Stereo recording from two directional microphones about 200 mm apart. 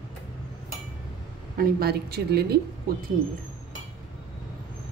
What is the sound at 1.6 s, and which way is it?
Speech, 50° right (ahead or behind).